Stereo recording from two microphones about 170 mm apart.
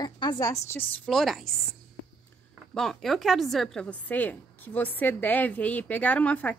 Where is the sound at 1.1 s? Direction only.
Centre (ahead or behind).